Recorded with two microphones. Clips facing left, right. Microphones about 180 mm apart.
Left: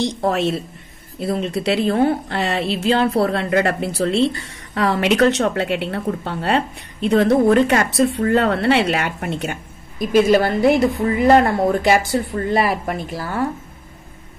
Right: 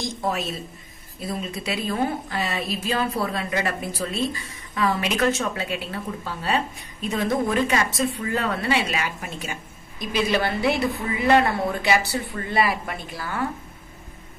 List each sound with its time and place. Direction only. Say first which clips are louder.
0.0 s a woman's voice: left 8 dB; 70° left (ahead or behind); by 13.5 s 40° left (ahead or behind)